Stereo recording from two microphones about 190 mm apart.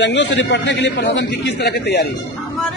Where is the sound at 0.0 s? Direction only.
70° left (ahead or behind).